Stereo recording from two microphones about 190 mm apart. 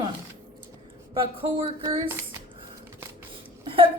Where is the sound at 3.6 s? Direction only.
30° right (ahead or behind).